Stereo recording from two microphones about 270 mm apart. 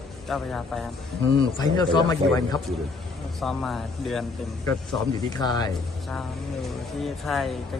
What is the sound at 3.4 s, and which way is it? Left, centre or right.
Speech, centre.